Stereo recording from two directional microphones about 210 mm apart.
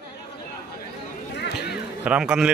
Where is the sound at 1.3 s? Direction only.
50° left (ahead or behind).